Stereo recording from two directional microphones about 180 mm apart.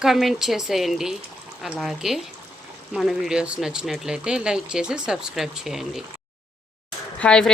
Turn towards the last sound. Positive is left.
turn(degrees=5)  # may be behind; listen again after turning